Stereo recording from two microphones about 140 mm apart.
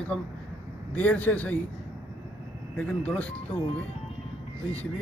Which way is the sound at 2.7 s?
5° left (ahead or behind).